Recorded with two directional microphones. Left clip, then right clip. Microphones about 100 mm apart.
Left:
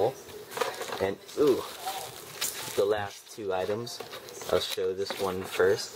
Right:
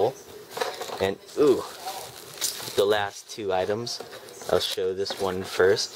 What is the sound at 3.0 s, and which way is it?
Speech, 45° right (ahead or behind).